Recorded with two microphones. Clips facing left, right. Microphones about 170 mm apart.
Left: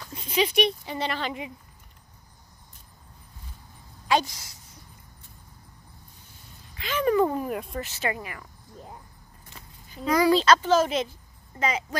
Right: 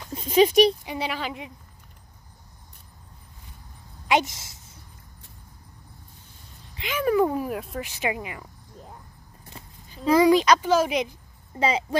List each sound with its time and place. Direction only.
0.1 s a sound: 45° right (ahead or behind)
0.8 s speech: 10° right (ahead or behind)
4.1 s a woman's voice: 20° right (ahead or behind)
6.9 s speech: 10° right (ahead or behind)
7.8 s speech: 15° right (ahead or behind)
9.5 s a sound: 30° right (ahead or behind)
10.3 s speech: 15° right (ahead or behind)
11.6 s a woman's voice: 30° right (ahead or behind)